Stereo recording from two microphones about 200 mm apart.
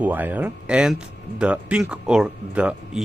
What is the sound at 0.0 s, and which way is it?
Speech, 10° right (ahead or behind).